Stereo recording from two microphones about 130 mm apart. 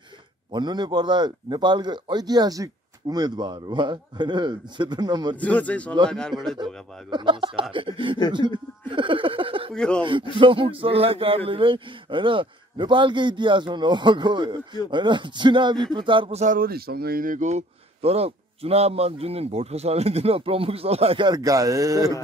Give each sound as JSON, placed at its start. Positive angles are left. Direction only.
{"t": 0.5, "sound": "a man's voice", "side_deg": -35}
{"t": 5.4, "sound": "a man's voice", "side_deg": 10}
{"t": 6.6, "sound": "a man's voice", "side_deg": -35}
{"t": 9.8, "sound": "a man's voice", "side_deg": 5}
{"t": 10.3, "sound": "a man's voice", "side_deg": -40}
{"t": 16.3, "sound": "a man's voice", "side_deg": -80}
{"t": 21.4, "sound": "speech", "side_deg": -25}